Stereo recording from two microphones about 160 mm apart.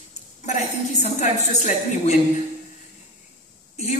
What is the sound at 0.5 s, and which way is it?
Speech, 45° left (ahead or behind).